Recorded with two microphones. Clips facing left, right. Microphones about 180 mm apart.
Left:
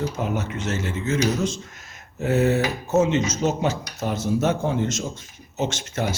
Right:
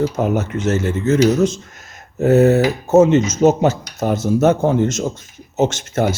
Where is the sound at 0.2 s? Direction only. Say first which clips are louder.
Right 8 dB; 45° right (ahead or behind).